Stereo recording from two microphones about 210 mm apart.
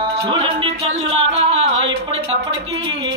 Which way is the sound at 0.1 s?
25° right (ahead or behind).